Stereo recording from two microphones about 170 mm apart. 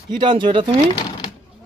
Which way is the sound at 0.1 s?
25° right (ahead or behind).